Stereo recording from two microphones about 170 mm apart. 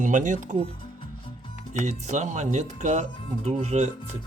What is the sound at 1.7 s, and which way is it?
Speech, 45° right (ahead or behind).